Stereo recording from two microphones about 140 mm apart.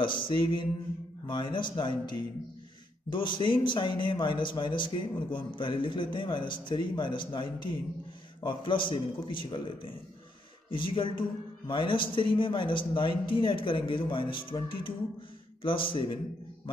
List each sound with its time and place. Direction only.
0.0 s speech: 35° left (ahead or behind)